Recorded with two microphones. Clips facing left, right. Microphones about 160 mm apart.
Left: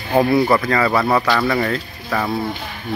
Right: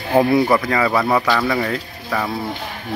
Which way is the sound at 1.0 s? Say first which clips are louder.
Left 1 dB; centre (ahead or behind).